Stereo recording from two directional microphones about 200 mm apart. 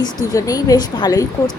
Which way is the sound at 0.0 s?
20° left (ahead or behind).